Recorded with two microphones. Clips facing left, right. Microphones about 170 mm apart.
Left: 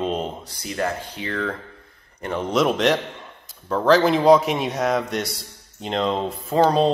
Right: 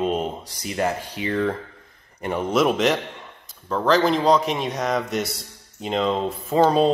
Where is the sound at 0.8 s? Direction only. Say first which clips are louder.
Right 2 dB; 15° right (ahead or behind).